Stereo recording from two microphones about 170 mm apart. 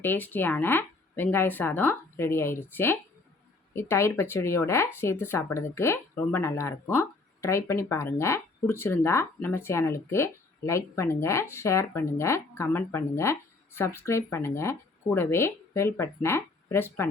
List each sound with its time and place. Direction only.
0.0 s speech: 10° left (ahead or behind)